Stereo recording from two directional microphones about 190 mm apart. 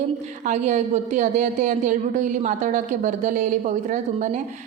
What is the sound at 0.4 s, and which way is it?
A woman's voice, 40° right (ahead or behind).